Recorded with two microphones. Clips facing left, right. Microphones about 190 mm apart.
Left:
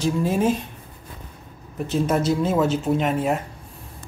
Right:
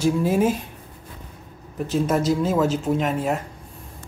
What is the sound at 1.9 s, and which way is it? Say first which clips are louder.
Speech: even; centre (ahead or behind).